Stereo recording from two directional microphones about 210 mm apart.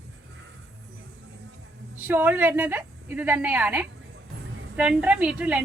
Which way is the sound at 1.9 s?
10° right (ahead or behind).